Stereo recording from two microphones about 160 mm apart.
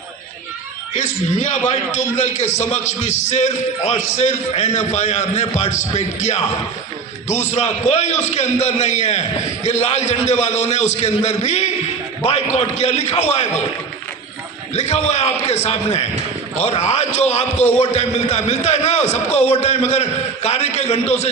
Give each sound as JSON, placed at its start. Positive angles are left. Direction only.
{"t": 0.9, "sound": "a man's voice", "side_deg": 50}
{"t": 14.7, "sound": "a man's voice", "side_deg": 45}